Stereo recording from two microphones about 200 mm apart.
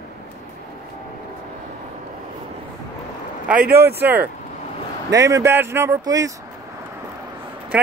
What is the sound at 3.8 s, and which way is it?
Speech, 10° right (ahead or behind).